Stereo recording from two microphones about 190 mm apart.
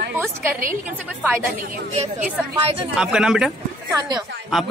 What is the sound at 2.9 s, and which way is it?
Speech, 5° right (ahead or behind).